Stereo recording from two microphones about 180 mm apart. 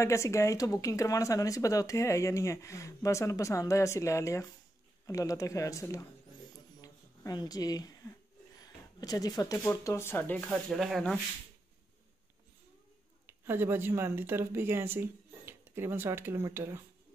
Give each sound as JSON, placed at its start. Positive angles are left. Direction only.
{"t": 0.0, "sound": "speech", "side_deg": 15}
{"t": 13.3, "sound": "speech", "side_deg": -10}